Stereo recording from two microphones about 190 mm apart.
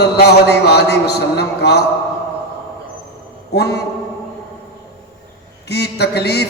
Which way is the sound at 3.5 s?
60° left (ahead or behind).